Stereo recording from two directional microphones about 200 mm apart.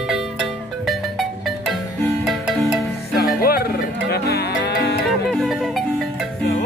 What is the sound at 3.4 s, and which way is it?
Music, 50° left (ahead or behind).